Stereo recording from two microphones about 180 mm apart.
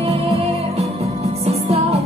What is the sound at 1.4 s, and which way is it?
Music, 35° right (ahead or behind).